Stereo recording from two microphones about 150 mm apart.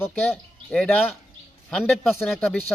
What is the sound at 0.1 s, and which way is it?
Speech, 5° left (ahead or behind).